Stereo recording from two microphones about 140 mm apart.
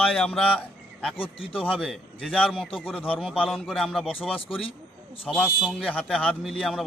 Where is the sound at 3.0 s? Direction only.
10° left (ahead or behind).